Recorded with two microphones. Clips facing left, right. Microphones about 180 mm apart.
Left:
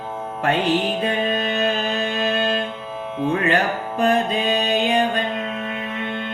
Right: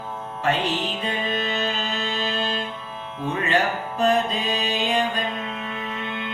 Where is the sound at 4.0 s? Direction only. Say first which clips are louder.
Left 2 dB; 60° left (ahead or behind).